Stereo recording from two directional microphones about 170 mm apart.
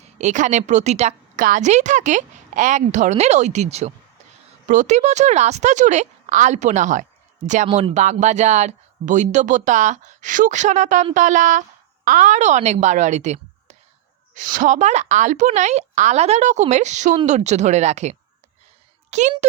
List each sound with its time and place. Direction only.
0.0 s a woman's voice: 45° right (ahead or behind)